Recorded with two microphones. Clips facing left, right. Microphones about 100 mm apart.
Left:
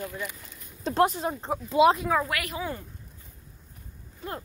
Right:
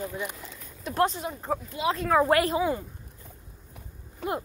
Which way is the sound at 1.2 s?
45° left (ahead or behind).